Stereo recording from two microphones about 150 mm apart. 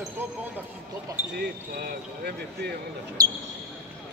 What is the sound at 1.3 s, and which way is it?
Speech, 90° right.